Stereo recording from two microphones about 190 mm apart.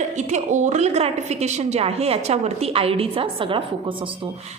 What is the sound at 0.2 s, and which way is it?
A woman's voice, 40° right (ahead or behind).